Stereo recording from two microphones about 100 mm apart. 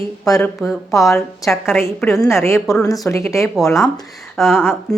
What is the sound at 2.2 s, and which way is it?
Speech, 25° left (ahead or behind).